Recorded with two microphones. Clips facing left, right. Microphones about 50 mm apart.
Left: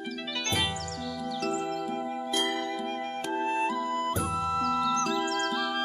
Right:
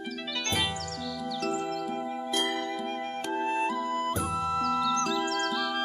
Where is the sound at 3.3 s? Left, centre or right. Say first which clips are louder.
Even; centre.